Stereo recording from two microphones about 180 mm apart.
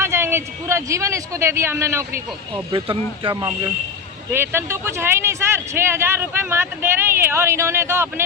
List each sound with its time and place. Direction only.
0.0 s speech: 15° right (ahead or behind)
2.7 s speech: 30° right (ahead or behind)
4.3 s speech: 15° right (ahead or behind)